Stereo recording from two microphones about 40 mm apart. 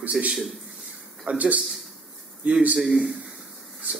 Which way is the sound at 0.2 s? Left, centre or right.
Centre.